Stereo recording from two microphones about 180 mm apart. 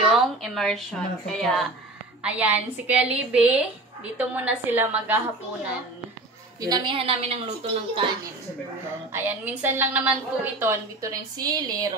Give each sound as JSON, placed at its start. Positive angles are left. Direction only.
{"t": 0.1, "sound": "a woman's voice", "side_deg": 0}
{"t": 2.2, "sound": "a woman's voice", "side_deg": -10}
{"t": 6.6, "sound": "a woman's voice", "side_deg": -25}
{"t": 9.1, "sound": "a woman's voice", "side_deg": -10}